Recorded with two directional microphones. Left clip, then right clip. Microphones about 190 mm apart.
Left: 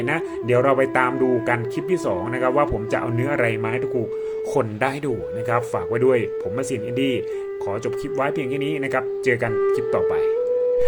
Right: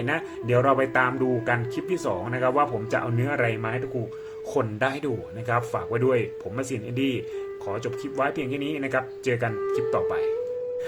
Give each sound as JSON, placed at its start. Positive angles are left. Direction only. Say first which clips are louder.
{"t": 0.1, "sound": "speech", "louder": "left 3 dB", "side_deg": 20}
{"t": 4.5, "sound": "speech", "louder": "left 2 dB", "side_deg": 25}
{"t": 8.2, "sound": "speech", "louder": "left 3 dB", "side_deg": 25}